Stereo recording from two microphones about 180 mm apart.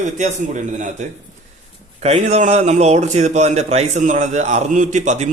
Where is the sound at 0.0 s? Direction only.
40° right (ahead or behind).